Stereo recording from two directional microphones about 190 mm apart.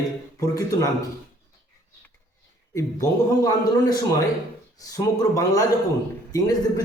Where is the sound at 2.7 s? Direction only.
15° left (ahead or behind).